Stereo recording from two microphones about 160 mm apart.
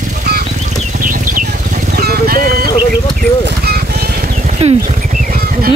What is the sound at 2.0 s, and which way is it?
Vehicle, 75° right (ahead or behind).